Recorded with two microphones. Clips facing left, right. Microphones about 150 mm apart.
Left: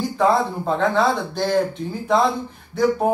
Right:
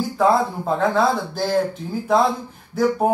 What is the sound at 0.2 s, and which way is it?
Speech, 5° right (ahead or behind).